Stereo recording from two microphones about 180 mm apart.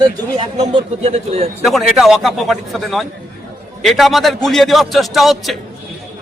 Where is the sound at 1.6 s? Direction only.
Centre (ahead or behind).